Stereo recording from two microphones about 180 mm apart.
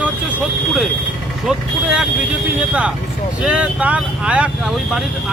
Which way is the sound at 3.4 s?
5° right (ahead or behind).